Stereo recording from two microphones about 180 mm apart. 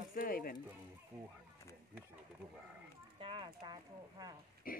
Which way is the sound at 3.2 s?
30° right (ahead or behind).